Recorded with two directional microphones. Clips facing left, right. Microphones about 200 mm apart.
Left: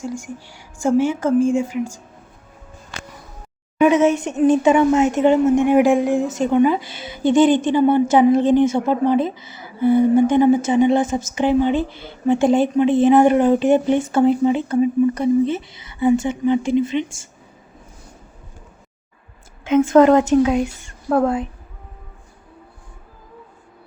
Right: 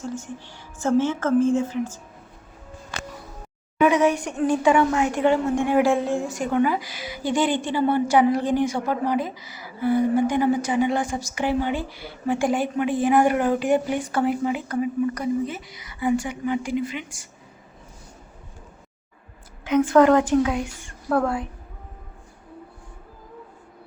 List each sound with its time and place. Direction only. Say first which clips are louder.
0.0 s a woman's voice: left 3 dB; 10° left (ahead or behind)
3.8 s speech: left 4 dB; 20° left (ahead or behind)
19.6 s speech: left 4 dB; 25° left (ahead or behind)